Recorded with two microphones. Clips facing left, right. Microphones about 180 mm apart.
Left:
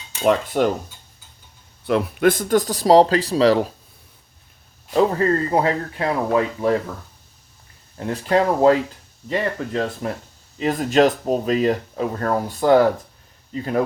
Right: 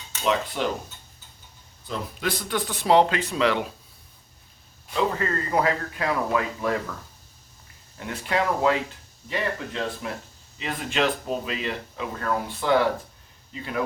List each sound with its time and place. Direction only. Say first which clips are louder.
0.2 s cutlery: left 7 dB; 50° left (ahead or behind)
1.9 s speech: left 12 dB; 55° left (ahead or behind); by 3.7 s 35° left (ahead or behind)
4.9 s speech: left 8 dB; 35° left (ahead or behind)
7.9 s speech: left 7 dB; 35° left (ahead or behind)